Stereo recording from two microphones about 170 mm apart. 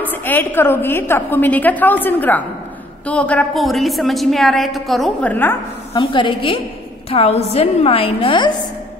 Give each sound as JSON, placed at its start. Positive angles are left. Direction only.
{"t": 0.0, "sound": "a woman's voice", "side_deg": 10}
{"t": 5.9, "sound": "a woman's voice", "side_deg": 30}